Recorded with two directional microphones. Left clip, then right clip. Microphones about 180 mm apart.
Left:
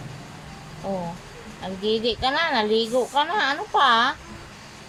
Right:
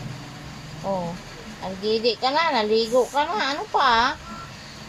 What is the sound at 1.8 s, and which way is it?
Speech, 15° left (ahead or behind).